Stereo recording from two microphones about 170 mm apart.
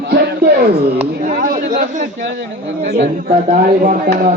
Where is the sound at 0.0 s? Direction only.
80° right.